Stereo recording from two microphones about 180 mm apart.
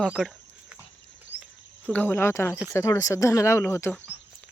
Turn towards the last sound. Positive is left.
turn(degrees=10)  # may be behind; listen again after turning